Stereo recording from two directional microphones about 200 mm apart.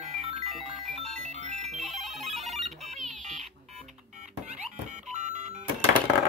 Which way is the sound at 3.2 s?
35° right (ahead or behind).